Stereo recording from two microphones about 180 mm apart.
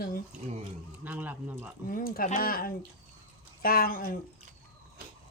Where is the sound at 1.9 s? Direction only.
50° left (ahead or behind).